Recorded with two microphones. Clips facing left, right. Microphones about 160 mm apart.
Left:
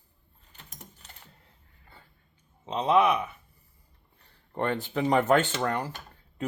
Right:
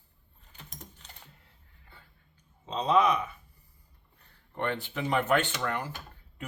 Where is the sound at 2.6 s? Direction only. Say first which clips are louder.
Left 2 dB; 20° left (ahead or behind).